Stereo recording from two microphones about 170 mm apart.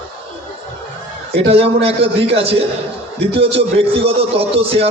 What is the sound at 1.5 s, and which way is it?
A man's voice, 35° right (ahead or behind).